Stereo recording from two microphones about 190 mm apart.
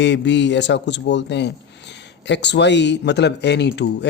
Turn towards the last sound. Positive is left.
turn(degrees=65)  # may be behind; listen again after turning